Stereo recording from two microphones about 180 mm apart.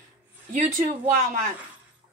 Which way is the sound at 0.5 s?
45° right (ahead or behind).